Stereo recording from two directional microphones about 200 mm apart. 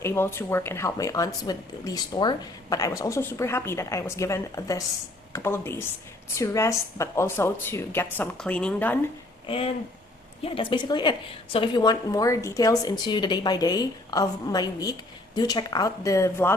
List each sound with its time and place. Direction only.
0.0 s speech: 10° left (ahead or behind)
9.5 s a woman's voice: 30° left (ahead or behind); by 16.6 s 15° left (ahead or behind)